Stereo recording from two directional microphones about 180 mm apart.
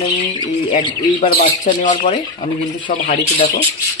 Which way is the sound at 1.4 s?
45° left (ahead or behind).